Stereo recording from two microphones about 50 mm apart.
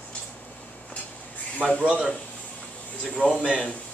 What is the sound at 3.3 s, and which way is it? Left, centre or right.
Speech, centre.